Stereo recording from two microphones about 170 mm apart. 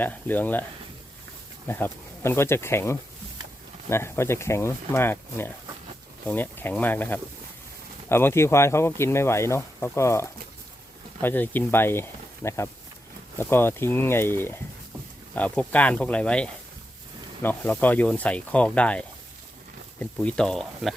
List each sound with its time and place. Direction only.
0.0 s speech: 10° left (ahead or behind)
1.6 s speech: 10° left (ahead or behind)